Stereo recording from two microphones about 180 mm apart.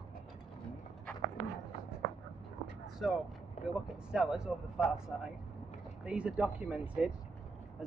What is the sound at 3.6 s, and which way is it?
Vehicle, 45° left (ahead or behind).